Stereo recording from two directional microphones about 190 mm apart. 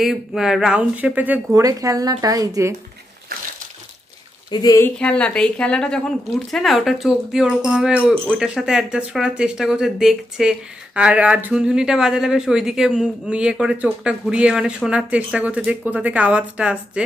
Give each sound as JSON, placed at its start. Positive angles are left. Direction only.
{"t": 0.0, "sound": "speech", "side_deg": 0}
{"t": 4.5, "sound": "speech", "side_deg": 20}
{"t": 4.8, "sound": "speech", "side_deg": 5}